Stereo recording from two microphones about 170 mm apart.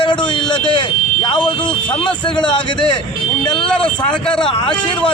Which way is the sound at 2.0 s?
25° left (ahead or behind).